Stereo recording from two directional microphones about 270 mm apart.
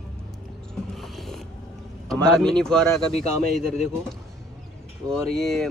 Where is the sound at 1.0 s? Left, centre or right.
Centre.